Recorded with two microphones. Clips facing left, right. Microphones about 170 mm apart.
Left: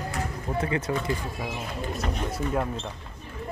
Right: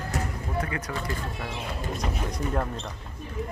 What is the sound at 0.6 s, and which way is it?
Speech, 25° left (ahead or behind).